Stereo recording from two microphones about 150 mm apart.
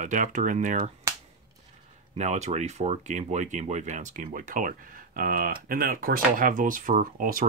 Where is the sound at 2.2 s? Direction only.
50° right (ahead or behind).